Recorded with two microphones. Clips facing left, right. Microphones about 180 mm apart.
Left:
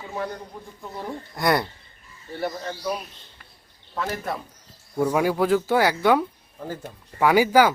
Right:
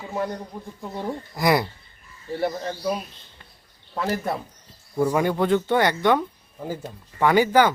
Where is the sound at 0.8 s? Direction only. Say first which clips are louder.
Right 3 dB; 20° right (ahead or behind).